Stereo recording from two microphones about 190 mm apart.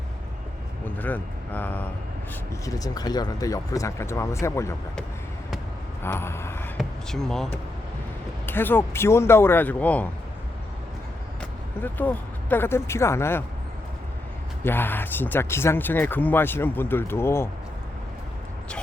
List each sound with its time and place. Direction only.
0.9 s speech: 10° left (ahead or behind)
6.0 s vehicle: 15° left (ahead or behind)
6.7 s speech: centre (ahead or behind)
11.8 s speech: 10° left (ahead or behind)
14.6 s speech: 10° left (ahead or behind)